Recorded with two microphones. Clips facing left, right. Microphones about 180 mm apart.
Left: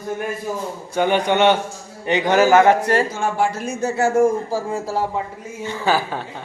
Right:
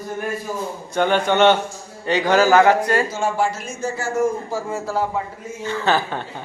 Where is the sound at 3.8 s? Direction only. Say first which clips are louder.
Left 5 dB; 70° left (ahead or behind).